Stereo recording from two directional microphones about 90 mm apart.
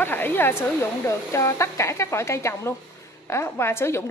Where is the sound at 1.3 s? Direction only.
35° left (ahead or behind).